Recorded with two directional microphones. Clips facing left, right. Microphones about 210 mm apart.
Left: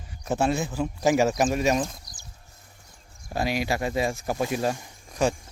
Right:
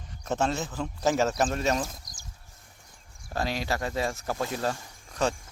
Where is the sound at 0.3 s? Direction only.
10° left (ahead or behind).